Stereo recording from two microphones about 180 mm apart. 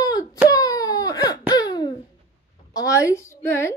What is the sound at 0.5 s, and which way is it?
Wail, 20° left (ahead or behind).